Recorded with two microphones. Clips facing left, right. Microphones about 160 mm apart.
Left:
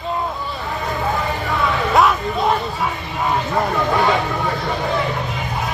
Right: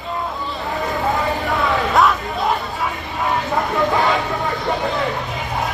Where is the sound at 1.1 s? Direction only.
Centre (ahead or behind).